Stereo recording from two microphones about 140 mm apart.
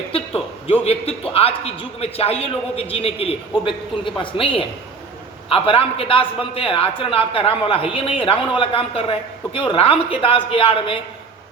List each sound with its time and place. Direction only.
0.1 s a man's voice: 45° left (ahead or behind)